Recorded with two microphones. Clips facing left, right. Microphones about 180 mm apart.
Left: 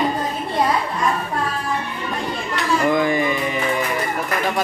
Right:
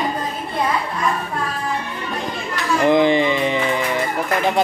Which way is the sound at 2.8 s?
25° right (ahead or behind).